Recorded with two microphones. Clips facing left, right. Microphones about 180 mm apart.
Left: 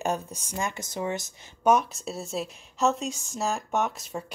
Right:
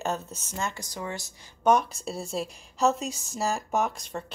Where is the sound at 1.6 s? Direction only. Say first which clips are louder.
Even; 5° left (ahead or behind).